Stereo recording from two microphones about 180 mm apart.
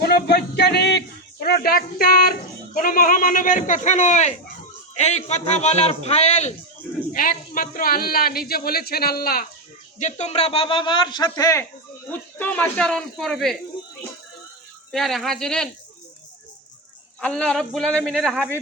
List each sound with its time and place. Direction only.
0.0 s a sound: 60° left (ahead or behind)
2.7 s a man's voice: 50° left (ahead or behind)
10.0 s a man's voice: 40° left (ahead or behind); by 11.6 s 20° left (ahead or behind)
12.1 s a man's voice: 10° left (ahead or behind)
14.9 s a man's voice: centre (ahead or behind)
17.2 s a man's voice: 5° left (ahead or behind)